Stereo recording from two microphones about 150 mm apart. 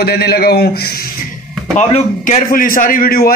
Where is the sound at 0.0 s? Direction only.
90° left.